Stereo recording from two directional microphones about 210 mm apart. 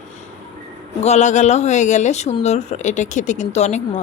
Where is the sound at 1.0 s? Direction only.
35° left (ahead or behind).